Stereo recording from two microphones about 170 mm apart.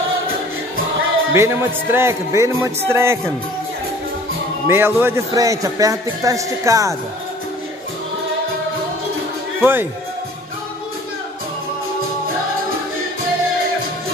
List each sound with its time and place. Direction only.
1.3 s speech: 15° right (ahead or behind)
4.6 s a man's voice: 15° right (ahead or behind)
9.6 s speech: 10° right (ahead or behind)